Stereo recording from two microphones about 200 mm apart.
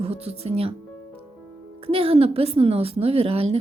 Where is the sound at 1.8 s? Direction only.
30° right (ahead or behind).